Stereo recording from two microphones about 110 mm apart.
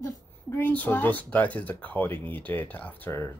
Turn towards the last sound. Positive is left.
turn(degrees=20)  # may be behind; listen again after turning